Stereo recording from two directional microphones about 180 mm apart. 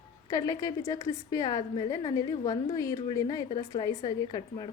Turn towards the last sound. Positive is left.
turn(degrees=25)  # may be behind; listen again after turning